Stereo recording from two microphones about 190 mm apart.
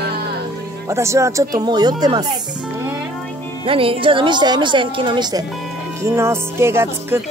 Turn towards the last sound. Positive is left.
turn(degrees=-15)  # may be behind; listen again after turning